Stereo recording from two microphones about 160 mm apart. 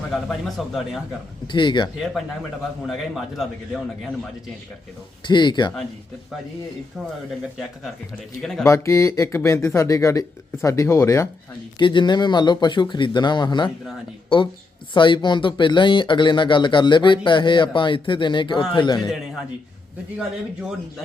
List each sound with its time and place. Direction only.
0.1 s a man's voice: centre (ahead or behind)
1.5 s speech: 30° left (ahead or behind)
2.8 s a man's voice: centre (ahead or behind)
5.2 s speech: 30° left (ahead or behind)
8.4 s a man's voice: centre (ahead or behind)
8.6 s speech: 15° left (ahead or behind)
11.8 s speech: 30° left (ahead or behind)
20.1 s a man's voice: 5° right (ahead or behind)